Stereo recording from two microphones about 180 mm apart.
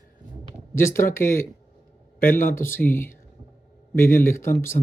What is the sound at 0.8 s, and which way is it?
Speech, 15° left (ahead or behind).